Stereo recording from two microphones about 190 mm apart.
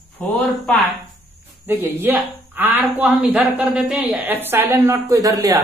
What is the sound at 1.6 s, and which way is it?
Speech, 10° right (ahead or behind).